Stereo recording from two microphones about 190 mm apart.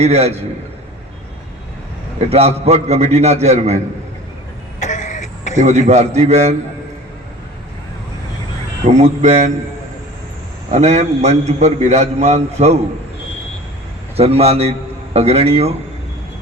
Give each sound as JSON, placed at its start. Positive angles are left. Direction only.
{"t": 0.0, "sound": "a man's voice", "side_deg": -35}
{"t": 2.1, "sound": "a man's voice", "side_deg": -35}
{"t": 4.8, "sound": "throat clearing", "side_deg": 40}
{"t": 5.5, "sound": "a man's voice", "side_deg": -40}
{"t": 8.9, "sound": "a man's voice", "side_deg": -35}
{"t": 10.7, "sound": "a man's voice", "side_deg": -35}
{"t": 14.2, "sound": "a man's voice", "side_deg": -35}